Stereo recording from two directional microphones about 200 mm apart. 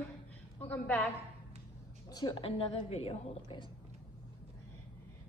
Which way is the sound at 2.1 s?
20° left (ahead or behind).